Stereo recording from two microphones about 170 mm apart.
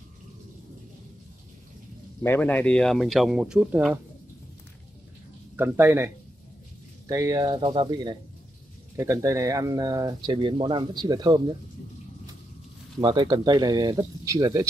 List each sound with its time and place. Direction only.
2.2 s speech: 10° left (ahead or behind)
5.6 s speech: 10° right (ahead or behind)
13.0 s speech: 30° right (ahead or behind)